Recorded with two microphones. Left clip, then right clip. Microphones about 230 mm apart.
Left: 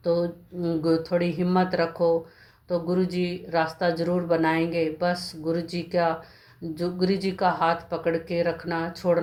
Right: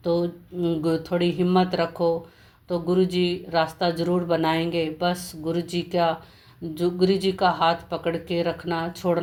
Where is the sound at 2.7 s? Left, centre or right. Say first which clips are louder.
Right 3 dB; right.